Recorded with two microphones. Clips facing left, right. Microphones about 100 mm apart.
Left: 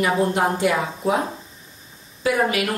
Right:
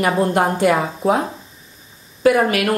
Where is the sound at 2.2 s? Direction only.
60° right (ahead or behind).